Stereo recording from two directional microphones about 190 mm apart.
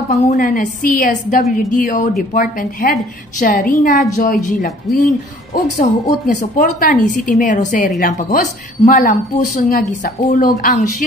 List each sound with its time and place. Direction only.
0.1 s a woman's voice: 35° left (ahead or behind)